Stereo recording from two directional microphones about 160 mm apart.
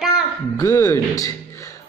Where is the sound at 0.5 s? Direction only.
20° left (ahead or behind).